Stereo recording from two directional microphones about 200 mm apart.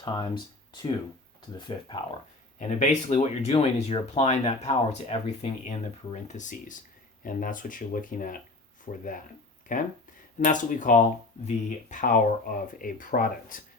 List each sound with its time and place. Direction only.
0.0 s speech: 20° left (ahead or behind)
2.6 s speech: 35° left (ahead or behind)